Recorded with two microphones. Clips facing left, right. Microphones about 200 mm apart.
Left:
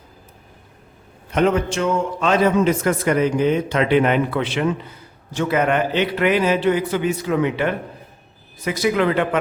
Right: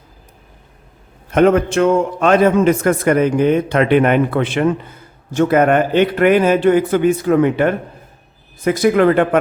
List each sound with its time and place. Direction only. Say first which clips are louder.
1.3 s a man's voice: right 6 dB; 55° right (ahead or behind)